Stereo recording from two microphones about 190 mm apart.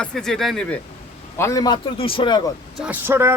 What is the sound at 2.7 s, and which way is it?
Speech, 5° right (ahead or behind).